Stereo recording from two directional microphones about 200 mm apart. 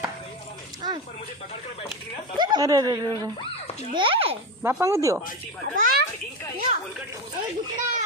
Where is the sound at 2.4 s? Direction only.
20° right (ahead or behind).